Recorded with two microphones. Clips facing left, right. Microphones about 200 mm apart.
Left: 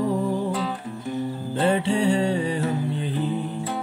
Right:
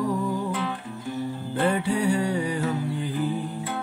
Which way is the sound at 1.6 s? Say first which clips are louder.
Left 2 dB; 25° left (ahead or behind).